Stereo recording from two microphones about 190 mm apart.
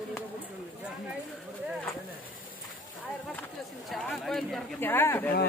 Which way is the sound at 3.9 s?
Centre (ahead or behind).